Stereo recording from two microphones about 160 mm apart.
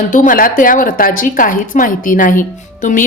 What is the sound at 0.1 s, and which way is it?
Speech, 55° left (ahead or behind).